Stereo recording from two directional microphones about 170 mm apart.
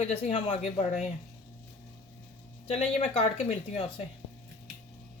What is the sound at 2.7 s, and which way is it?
Speech, 35° left (ahead or behind).